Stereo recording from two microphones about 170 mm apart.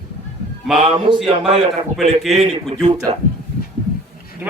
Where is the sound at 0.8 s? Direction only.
35° right (ahead or behind).